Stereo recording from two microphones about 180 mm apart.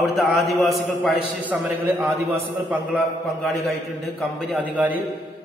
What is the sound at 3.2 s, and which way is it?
A man's voice, centre (ahead or behind).